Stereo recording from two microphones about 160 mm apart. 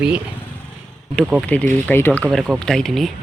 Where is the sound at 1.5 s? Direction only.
10° left (ahead or behind).